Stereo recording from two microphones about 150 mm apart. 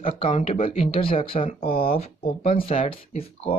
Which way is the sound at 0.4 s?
35° left (ahead or behind).